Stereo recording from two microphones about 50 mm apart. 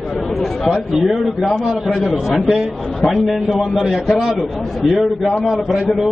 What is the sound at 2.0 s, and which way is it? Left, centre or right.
Speech, centre.